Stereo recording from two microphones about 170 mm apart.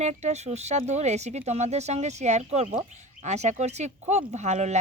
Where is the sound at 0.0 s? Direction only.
40° right (ahead or behind).